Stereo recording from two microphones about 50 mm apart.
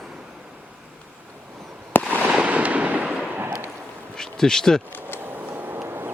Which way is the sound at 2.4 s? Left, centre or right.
Right.